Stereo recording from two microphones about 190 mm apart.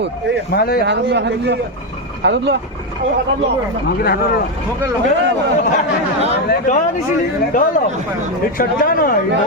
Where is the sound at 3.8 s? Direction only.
55° left (ahead or behind).